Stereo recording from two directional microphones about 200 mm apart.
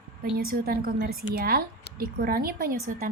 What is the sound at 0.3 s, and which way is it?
Speech, 50° right (ahead or behind).